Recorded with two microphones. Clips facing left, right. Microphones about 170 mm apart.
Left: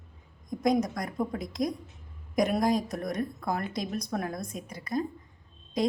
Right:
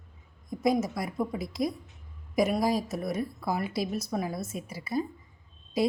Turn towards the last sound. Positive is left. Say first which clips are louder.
# right 1 dB
turn(degrees=-5)  # may be behind; listen again after turning